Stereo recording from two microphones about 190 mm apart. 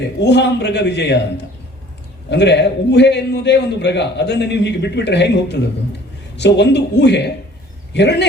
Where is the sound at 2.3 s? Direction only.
65° left (ahead or behind).